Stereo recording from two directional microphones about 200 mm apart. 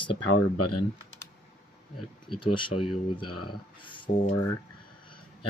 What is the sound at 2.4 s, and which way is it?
Speech, 25° left (ahead or behind).